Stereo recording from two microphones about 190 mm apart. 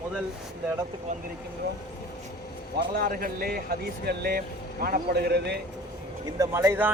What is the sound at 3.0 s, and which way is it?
Speech, 50° right (ahead or behind).